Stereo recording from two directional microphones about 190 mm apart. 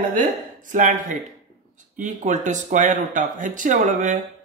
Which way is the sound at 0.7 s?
40° right (ahead or behind).